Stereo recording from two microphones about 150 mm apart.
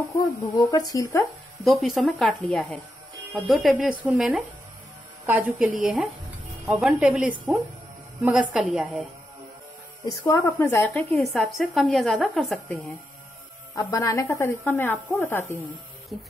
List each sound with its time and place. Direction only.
0.0 s speech: 20° left (ahead or behind)
1.6 s a woman's voice: centre (ahead or behind)
10.0 s speech: 25° left (ahead or behind)
10.6 s a woman's voice: 15° left (ahead or behind)
13.9 s speech: 20° left (ahead or behind)
16.1 s a woman's voice: centre (ahead or behind)